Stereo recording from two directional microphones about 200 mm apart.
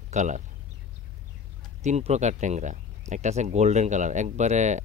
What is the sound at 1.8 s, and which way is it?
Speech, 35° right (ahead or behind).